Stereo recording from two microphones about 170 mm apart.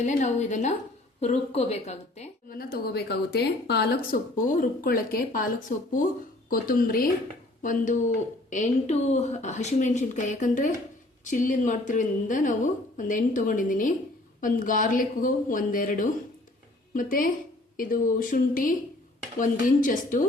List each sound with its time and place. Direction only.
0.0 s a woman's voice: 45° left (ahead or behind)
2.6 s a woman's voice: 65° left (ahead or behind)